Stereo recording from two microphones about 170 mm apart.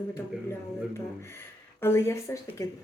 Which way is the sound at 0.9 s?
15° left (ahead or behind).